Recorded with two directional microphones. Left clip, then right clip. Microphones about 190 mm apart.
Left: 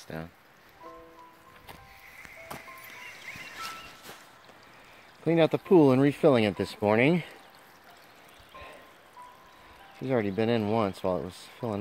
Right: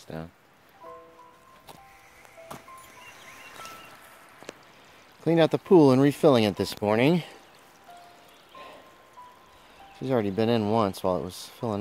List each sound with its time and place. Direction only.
0.1 s speech: 15° right (ahead or behind)
5.2 s speech: 20° right (ahead or behind)
9.9 s speech: 15° right (ahead or behind)